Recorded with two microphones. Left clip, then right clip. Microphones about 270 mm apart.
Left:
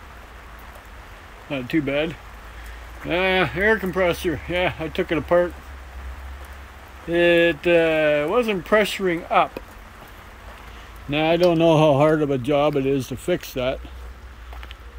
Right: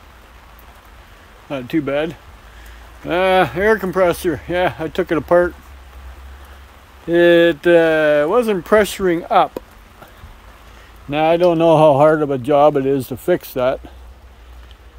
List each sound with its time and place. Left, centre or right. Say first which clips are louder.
1.5 s speech: right 3 dB; centre
7.1 s speech: right 5 dB; right
11.1 s speech: right 4 dB; centre